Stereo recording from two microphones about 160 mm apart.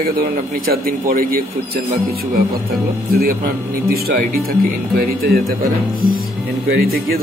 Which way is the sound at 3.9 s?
70° right (ahead or behind).